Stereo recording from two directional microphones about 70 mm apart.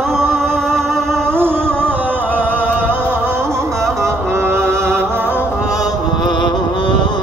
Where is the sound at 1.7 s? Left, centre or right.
Centre.